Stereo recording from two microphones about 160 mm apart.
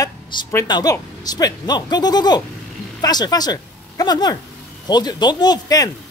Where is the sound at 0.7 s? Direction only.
25° left (ahead or behind).